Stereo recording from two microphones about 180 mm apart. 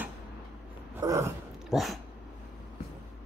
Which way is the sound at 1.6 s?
Centre (ahead or behind).